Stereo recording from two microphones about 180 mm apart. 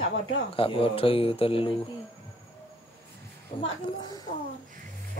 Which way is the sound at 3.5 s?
30° left (ahead or behind).